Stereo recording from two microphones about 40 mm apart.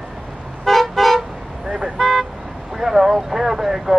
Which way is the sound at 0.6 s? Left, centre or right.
Centre.